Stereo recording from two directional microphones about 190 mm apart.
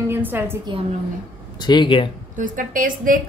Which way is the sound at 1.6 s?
25° left (ahead or behind).